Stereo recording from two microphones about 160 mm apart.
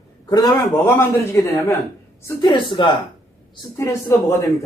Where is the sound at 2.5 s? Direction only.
30° left (ahead or behind).